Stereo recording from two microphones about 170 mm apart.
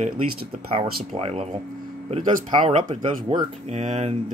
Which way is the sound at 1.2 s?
35° right (ahead or behind).